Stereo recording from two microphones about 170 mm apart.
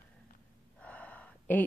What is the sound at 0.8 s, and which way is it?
Gasp, 10° left (ahead or behind).